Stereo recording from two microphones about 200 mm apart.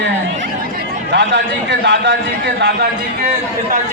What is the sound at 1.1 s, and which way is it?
A man's voice, 60° right (ahead or behind).